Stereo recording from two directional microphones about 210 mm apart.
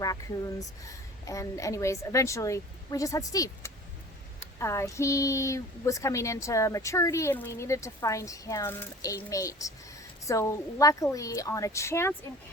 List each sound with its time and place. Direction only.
0.0 s a woman's voice: 15° left (ahead or behind)